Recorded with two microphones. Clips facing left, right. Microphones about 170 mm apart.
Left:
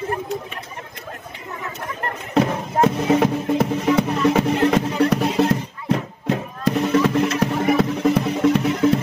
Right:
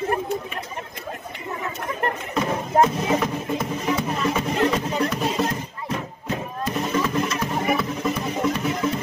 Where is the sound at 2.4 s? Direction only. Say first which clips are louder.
Left 2 dB; 70° left (ahead or behind).